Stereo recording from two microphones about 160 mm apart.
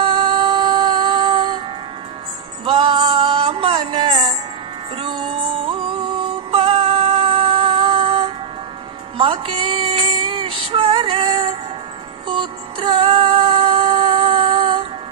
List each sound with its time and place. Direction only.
0.0 s music: 35° right (ahead or behind)
2.6 s music: 35° right (ahead or behind)
9.2 s a sound: 35° right (ahead or behind)
12.3 s music: 30° right (ahead or behind)